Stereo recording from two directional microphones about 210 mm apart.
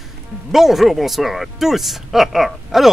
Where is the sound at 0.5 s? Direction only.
Centre (ahead or behind).